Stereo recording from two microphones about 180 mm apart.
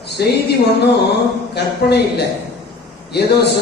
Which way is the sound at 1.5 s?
65° left (ahead or behind).